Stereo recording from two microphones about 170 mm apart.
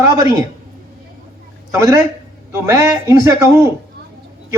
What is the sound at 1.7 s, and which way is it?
A man's voice, 20° right (ahead or behind).